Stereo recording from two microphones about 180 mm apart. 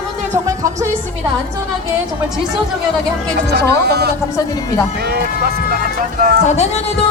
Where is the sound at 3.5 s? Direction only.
65° right (ahead or behind).